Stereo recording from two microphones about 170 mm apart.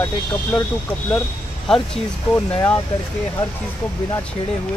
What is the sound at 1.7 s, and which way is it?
Speech, 5° left (ahead or behind).